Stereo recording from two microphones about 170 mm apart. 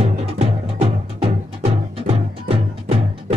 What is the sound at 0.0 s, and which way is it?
Music, 35° right (ahead or behind).